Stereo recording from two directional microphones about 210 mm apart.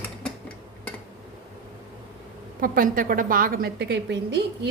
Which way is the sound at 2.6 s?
40° right (ahead or behind).